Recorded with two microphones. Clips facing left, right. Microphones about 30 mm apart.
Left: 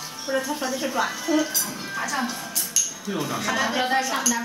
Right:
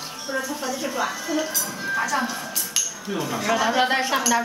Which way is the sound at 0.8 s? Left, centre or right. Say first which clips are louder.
Left 1 dB; centre.